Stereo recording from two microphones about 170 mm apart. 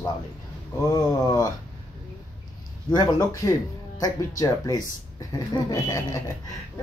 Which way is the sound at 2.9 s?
20° left (ahead or behind).